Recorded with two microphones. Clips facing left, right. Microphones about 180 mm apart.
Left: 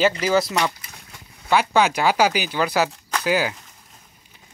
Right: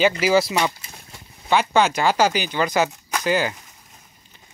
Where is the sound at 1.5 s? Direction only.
5° left (ahead or behind).